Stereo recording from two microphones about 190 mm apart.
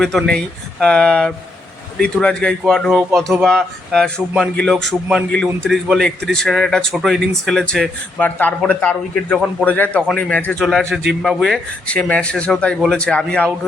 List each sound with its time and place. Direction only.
0.0 s speech: centre (ahead or behind)